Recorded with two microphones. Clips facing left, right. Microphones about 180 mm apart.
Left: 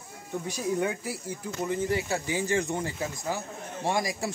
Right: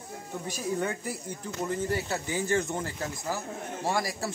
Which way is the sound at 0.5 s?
10° left (ahead or behind).